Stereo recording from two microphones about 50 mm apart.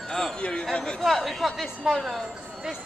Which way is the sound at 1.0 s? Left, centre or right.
Centre.